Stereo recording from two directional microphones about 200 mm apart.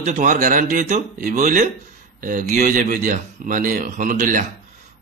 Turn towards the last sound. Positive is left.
turn(degrees=-40)  # may be behind; listen again after turning